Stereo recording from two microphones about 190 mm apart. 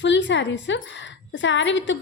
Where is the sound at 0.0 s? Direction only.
70° left (ahead or behind).